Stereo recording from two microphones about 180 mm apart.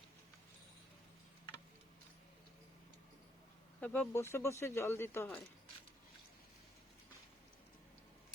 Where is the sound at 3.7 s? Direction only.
10° left (ahead or behind).